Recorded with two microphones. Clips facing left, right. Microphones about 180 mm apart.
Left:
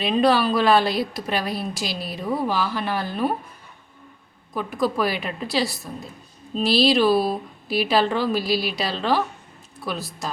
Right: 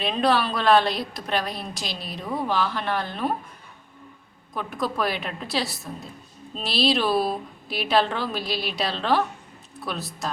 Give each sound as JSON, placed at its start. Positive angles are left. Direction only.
{"t": 0.0, "sound": "a woman's voice", "side_deg": 0}
{"t": 4.5, "sound": "a woman's voice", "side_deg": 0}